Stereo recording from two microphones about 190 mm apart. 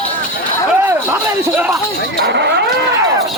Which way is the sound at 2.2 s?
60° right (ahead or behind).